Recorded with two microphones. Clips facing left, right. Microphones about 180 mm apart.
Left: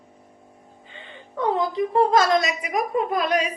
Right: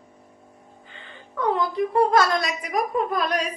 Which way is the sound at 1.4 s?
20° left (ahead or behind).